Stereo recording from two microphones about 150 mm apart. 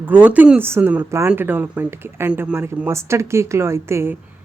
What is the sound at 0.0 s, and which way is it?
Speech, 10° right (ahead or behind).